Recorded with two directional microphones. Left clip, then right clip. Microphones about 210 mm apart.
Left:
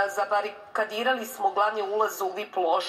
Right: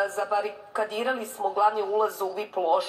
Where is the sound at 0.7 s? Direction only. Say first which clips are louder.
Left 2 dB; 30° left (ahead or behind).